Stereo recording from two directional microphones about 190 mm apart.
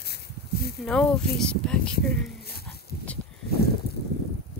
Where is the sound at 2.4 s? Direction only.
55° left (ahead or behind).